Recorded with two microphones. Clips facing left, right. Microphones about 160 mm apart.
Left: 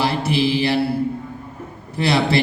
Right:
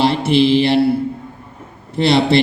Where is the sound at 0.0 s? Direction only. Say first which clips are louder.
Right 6 dB; 25° right (ahead or behind).